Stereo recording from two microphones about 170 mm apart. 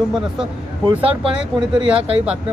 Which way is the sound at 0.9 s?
35° right (ahead or behind).